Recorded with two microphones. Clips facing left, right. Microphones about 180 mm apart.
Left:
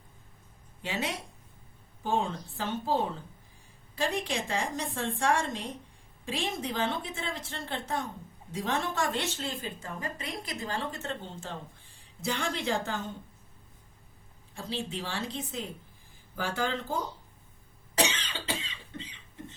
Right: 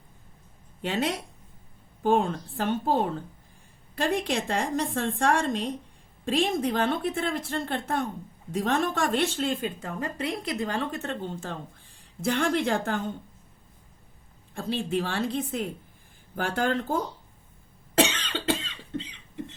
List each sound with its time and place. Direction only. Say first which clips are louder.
0.8 s a woman's voice: right 6 dB; 55° right (ahead or behind)
14.5 s a woman's voice: right 8 dB; 60° right (ahead or behind)
18.1 s cough: right 8 dB; 65° right (ahead or behind)